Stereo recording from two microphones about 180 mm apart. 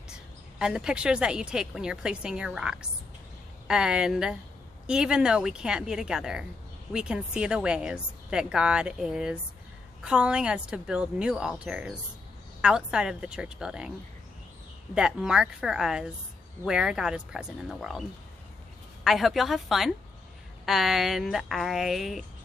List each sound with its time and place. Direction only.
0.6 s a woman's voice: 5° right (ahead or behind)
15.0 s a woman's voice: 5° right (ahead or behind)
19.0 s a woman's voice: centre (ahead or behind)